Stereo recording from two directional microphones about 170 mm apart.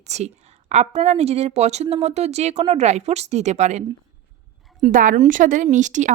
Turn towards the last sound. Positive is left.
turn(degrees=-45)  # may be behind; listen again after turning